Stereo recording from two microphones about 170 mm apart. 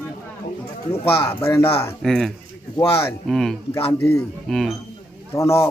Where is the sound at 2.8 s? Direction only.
15° left (ahead or behind).